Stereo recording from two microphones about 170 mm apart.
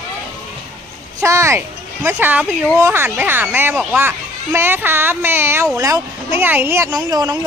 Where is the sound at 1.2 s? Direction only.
15° right (ahead or behind).